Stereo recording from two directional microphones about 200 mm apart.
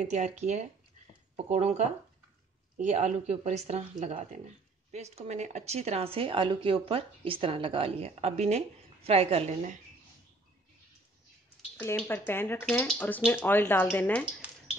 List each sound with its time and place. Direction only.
0.0 s speech: 35° right (ahead or behind)
1.3 s speech: 35° right (ahead or behind)
11.7 s speech: 10° left (ahead or behind)
14.4 s a sound: 5° right (ahead or behind)